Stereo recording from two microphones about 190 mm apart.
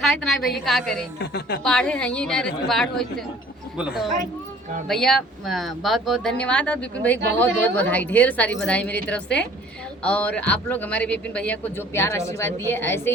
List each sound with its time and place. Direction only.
0.0 s speech: centre (ahead or behind)
1.2 s a woman's voice: 60° left (ahead or behind)
1.6 s a man's voice: 5° left (ahead or behind)